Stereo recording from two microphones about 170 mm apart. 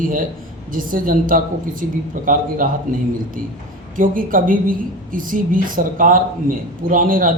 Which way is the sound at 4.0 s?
55° right (ahead or behind).